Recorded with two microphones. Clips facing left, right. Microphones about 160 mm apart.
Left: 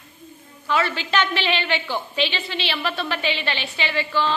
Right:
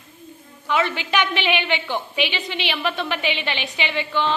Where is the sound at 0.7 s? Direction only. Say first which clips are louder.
Right 1 dB; 20° right (ahead or behind).